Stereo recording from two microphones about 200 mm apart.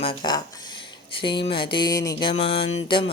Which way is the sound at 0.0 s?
25° left (ahead or behind).